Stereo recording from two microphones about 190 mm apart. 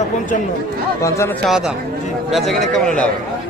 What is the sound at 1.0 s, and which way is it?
Speech, 15° left (ahead or behind).